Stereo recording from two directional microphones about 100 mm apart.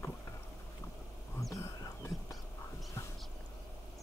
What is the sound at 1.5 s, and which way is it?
Whispering, 35° left (ahead or behind).